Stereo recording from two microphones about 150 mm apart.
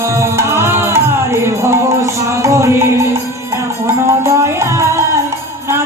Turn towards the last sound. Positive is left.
turn(degrees=-20)  # may be behind; listen again after turning